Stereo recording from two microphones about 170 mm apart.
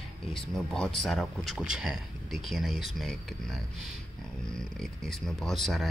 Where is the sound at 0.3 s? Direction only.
5° left (ahead or behind).